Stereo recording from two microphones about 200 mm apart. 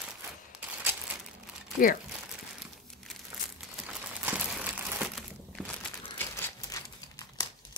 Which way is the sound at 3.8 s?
5° right (ahead or behind).